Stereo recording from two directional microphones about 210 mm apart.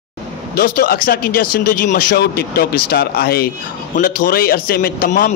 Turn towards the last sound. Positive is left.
turn(degrees=40)  # may be behind; listen again after turning